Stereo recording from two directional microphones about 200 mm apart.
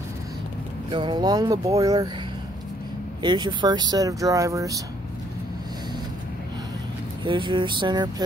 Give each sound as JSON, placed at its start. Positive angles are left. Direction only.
{"t": 0.8, "sound": "speech", "side_deg": -25}
{"t": 3.2, "sound": "speech", "side_deg": -20}
{"t": 7.2, "sound": "speech", "side_deg": -25}